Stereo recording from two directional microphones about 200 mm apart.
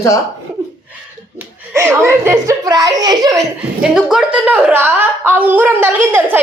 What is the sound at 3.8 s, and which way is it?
A woman's voice, 5° right (ahead or behind).